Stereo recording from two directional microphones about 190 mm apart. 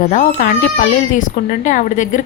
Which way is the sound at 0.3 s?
45° left (ahead or behind).